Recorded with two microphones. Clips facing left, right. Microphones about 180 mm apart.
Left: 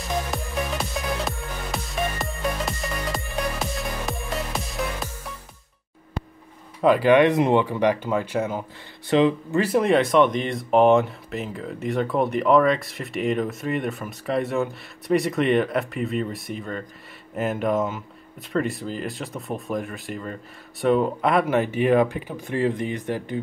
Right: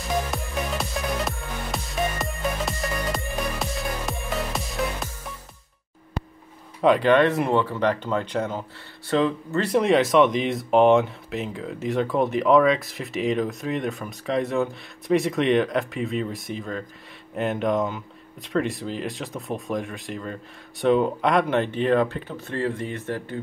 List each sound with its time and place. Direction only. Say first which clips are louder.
0.3 s music: left 1 dB; centre (ahead or behind)
6.8 s speech: left 1 dB; 5° left (ahead or behind)
9.7 s speech: right 1 dB; centre (ahead or behind)